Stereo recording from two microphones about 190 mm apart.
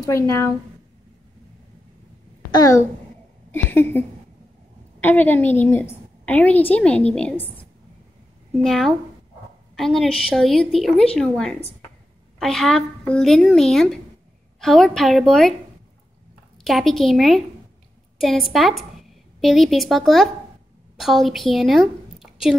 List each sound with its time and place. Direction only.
0.0 s a woman's voice: 15° left (ahead or behind)
2.5 s a woman's voice: 20° left (ahead or behind)
5.0 s a woman's voice: 10° left (ahead or behind)
8.6 s speech: centre (ahead or behind)
16.6 s a woman's voice: centre (ahead or behind)